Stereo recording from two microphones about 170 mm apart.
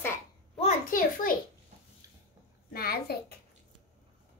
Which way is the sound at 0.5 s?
40° left (ahead or behind).